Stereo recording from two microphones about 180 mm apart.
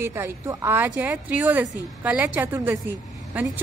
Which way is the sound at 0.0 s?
15° right (ahead or behind).